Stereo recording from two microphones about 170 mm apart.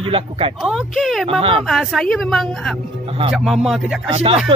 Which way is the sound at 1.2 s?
35° right (ahead or behind).